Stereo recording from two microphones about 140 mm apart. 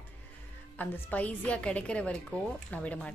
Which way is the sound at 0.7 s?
10° left (ahead or behind).